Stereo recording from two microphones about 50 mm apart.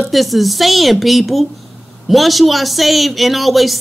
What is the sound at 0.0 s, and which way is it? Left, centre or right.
Speech, centre.